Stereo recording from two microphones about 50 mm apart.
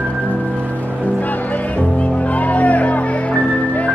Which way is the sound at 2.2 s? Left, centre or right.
Left.